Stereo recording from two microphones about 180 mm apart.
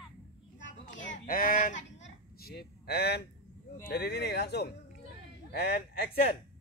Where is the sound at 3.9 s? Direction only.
65° left (ahead or behind).